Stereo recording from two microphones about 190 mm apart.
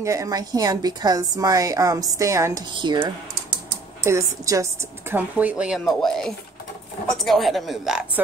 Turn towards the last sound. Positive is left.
turn(degrees=0)  # may be behind; listen again after turning